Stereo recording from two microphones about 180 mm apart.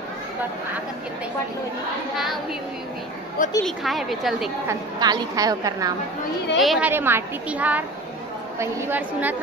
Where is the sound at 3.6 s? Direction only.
Centre (ahead or behind).